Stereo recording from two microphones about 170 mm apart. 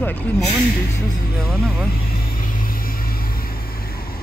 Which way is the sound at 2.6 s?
60° left (ahead or behind).